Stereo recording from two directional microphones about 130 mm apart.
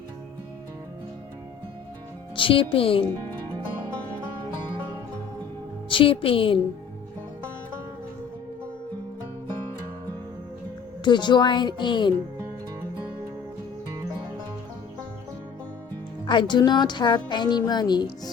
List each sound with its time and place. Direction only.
2.3 s speech: 40° left (ahead or behind)
5.9 s speech: 40° left (ahead or behind)
11.0 s speech: 35° left (ahead or behind)
16.2 s speech: 35° left (ahead or behind)